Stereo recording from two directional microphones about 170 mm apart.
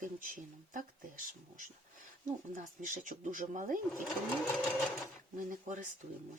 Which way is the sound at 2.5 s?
50° right (ahead or behind).